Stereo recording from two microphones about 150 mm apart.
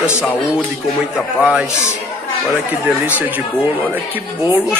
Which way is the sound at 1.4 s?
5° right (ahead or behind).